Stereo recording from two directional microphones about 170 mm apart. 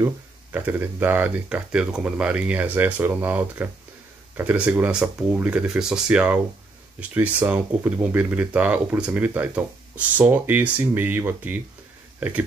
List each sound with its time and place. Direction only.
0.0 s speech: 10° right (ahead or behind)